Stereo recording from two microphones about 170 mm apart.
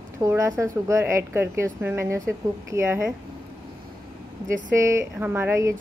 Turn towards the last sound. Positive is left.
turn(degrees=-15)  # may be behind; listen again after turning